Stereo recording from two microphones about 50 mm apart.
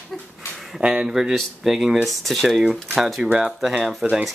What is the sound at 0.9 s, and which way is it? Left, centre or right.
Speech, centre.